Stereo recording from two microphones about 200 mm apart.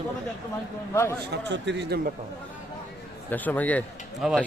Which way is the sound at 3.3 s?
10° left (ahead or behind).